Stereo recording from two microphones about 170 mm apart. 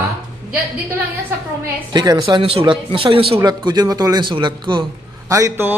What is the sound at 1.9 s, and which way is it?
A man's voice, 25° right (ahead or behind).